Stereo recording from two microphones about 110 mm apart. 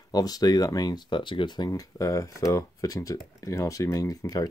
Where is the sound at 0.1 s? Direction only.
35° left (ahead or behind).